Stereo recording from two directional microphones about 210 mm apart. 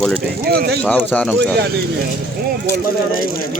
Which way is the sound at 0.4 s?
50° right (ahead or behind).